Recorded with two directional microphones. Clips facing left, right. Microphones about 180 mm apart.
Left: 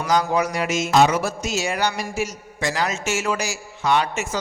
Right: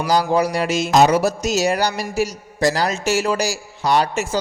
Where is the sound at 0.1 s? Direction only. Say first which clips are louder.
Right 3 dB; 35° right (ahead or behind).